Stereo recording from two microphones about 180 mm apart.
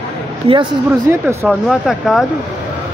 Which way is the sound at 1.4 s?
Centre (ahead or behind).